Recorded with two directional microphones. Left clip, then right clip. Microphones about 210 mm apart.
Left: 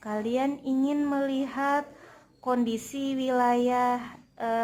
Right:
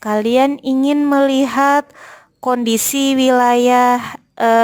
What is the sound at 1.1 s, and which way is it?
A woman's voice, 45° right (ahead or behind).